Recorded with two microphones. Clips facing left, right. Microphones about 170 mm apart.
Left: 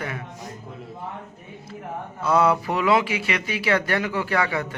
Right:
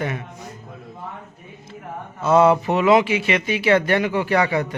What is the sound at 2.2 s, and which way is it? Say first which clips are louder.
Speech: right 5 dB; 25° right (ahead or behind).